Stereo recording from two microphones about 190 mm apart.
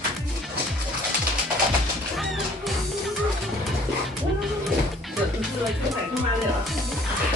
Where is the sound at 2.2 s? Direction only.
Centre (ahead or behind).